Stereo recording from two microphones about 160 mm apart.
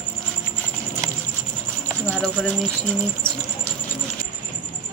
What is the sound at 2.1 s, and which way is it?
Speech, centre (ahead or behind).